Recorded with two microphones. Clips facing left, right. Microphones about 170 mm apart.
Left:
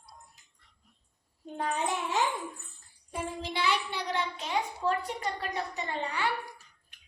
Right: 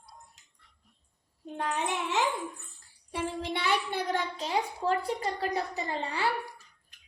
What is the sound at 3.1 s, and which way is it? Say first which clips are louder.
Child singing: right 2 dB; 65° right (ahead or behind).